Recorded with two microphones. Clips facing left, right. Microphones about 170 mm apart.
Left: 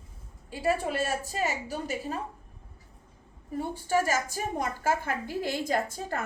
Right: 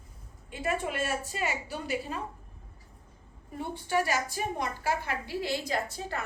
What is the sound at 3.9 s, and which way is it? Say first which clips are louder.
A woman's voice: left 2 dB; 45° left (ahead or behind).